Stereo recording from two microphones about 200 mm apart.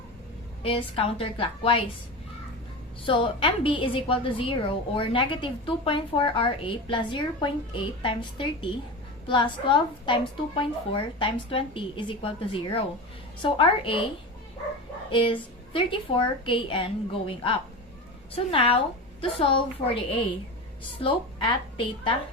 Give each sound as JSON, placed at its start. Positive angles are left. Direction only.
{"t": 0.6, "sound": "a woman's voice", "side_deg": 25}
{"t": 3.0, "sound": "a woman's voice", "side_deg": 25}
{"t": 15.1, "sound": "a woman's voice", "side_deg": 25}
{"t": 18.5, "sound": "a woman's voice", "side_deg": 25}